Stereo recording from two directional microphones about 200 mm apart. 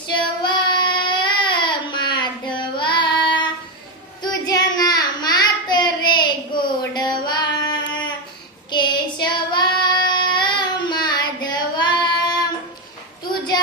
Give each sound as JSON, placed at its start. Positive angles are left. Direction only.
{"t": 0.1, "sound": "child singing", "side_deg": 20}